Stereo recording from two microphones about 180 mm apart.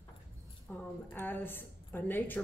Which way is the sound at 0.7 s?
10° left (ahead or behind).